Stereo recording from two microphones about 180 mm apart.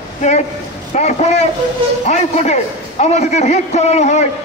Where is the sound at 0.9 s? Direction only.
40° left (ahead or behind).